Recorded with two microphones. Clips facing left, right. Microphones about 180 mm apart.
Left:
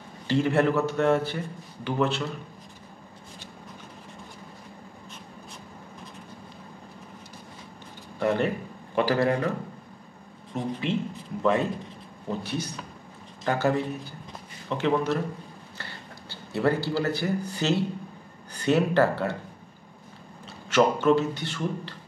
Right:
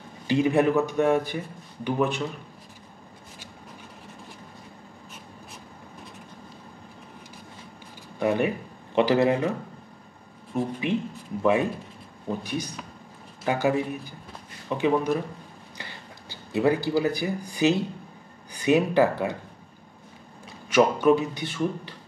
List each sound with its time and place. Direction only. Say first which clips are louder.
0.3 s a man's voice: right 2 dB; 15° right (ahead or behind)
8.2 s speech: right 1 dB; 15° right (ahead or behind)
10.5 s a man's voice: right 2 dB; 10° right (ahead or behind)
12.3 s a man's voice: right 1 dB; 15° right (ahead or behind)
20.7 s a man's voice: right 1 dB; 15° right (ahead or behind)